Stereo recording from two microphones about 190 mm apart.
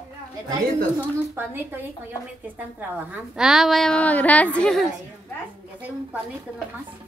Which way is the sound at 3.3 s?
5° right (ahead or behind).